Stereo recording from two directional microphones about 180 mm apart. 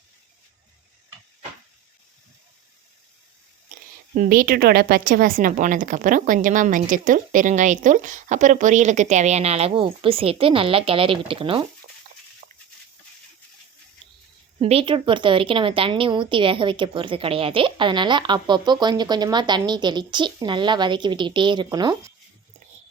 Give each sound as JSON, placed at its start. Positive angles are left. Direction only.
{"t": 4.1, "sound": "a woman's voice", "side_deg": -50}
{"t": 14.6, "sound": "a woman's voice", "side_deg": -30}